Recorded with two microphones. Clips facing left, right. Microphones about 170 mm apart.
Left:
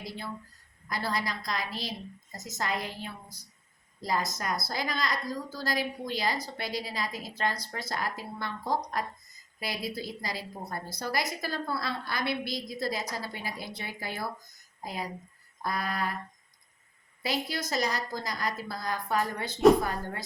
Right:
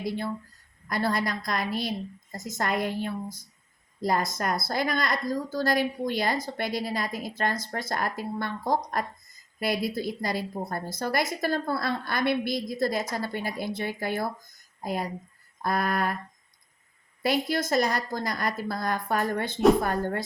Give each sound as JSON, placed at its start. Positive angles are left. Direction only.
{"t": 0.9, "sound": "a woman's voice", "side_deg": -55}
{"t": 17.2, "sound": "a woman's voice", "side_deg": -50}